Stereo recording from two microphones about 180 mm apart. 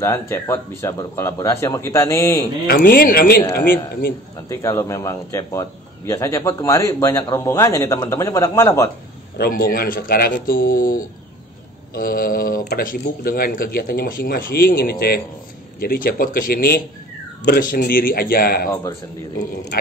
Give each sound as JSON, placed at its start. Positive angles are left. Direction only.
{"t": 0.0, "sound": "a man's voice", "side_deg": 15}
{"t": 2.6, "sound": "speech", "side_deg": 55}
{"t": 4.5, "sound": "a man's voice", "side_deg": 15}
{"t": 9.4, "sound": "speech", "side_deg": 55}